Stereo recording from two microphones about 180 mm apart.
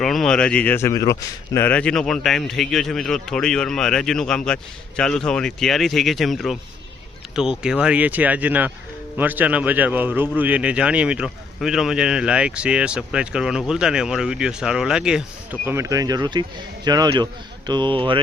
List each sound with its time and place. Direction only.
0.0 s speech: centre (ahead or behind)
15.6 s speech: 15° right (ahead or behind)